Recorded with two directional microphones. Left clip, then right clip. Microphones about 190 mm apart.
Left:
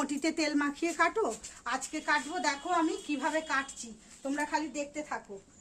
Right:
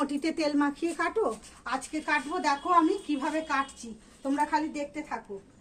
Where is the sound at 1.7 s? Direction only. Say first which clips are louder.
Right 1 dB; 10° left (ahead or behind).